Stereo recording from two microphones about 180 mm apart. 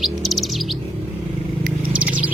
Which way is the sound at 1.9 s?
5° right (ahead or behind).